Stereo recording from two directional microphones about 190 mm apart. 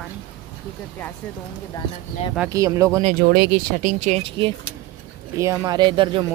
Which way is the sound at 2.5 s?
20° right (ahead or behind).